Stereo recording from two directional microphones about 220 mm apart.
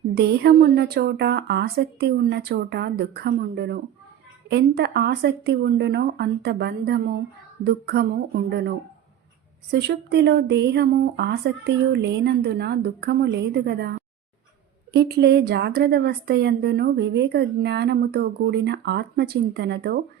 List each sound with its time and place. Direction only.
0.1 s a woman's voice: 50° right (ahead or behind)
9.7 s a woman's voice: 50° right (ahead or behind)